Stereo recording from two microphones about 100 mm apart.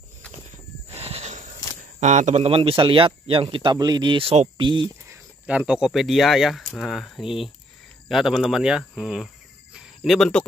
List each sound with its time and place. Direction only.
0.8 s a sound: 90° right
2.3 s speech: 75° right (ahead or behind)
3.7 s speech: 40° right (ahead or behind)
4.2 s speech: 60° right (ahead or behind)
5.5 s speech: 10° right (ahead or behind)
9.8 s cricket: centre (ahead or behind)